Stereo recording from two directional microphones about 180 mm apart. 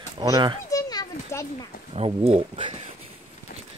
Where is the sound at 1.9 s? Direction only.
35° right (ahead or behind).